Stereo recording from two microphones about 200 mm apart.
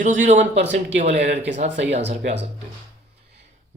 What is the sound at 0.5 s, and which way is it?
Speech, 60° right (ahead or behind).